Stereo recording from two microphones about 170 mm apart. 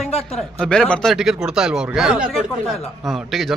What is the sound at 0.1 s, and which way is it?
Speech, 35° left (ahead or behind).